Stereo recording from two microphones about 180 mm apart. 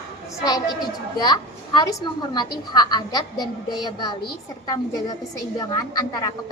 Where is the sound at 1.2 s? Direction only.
20° left (ahead or behind).